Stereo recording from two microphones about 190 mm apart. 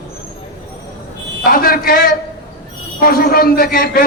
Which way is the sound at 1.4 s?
50° left (ahead or behind).